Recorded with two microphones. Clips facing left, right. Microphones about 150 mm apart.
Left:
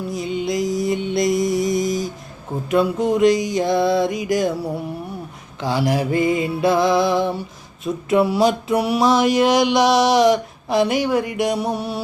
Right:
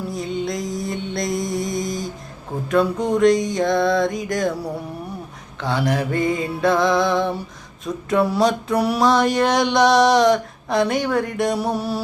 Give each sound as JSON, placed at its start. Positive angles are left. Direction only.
{"t": 0.1, "sound": "music", "side_deg": 5}
{"t": 2.7, "sound": "mantra", "side_deg": 0}
{"t": 5.5, "sound": "speech", "side_deg": 10}
{"t": 5.8, "sound": "mantra", "side_deg": 30}
{"t": 6.1, "sound": "music", "side_deg": 10}
{"t": 8.2, "sound": "mantra", "side_deg": 5}